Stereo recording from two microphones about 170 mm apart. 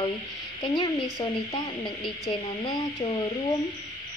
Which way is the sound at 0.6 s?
30° left (ahead or behind).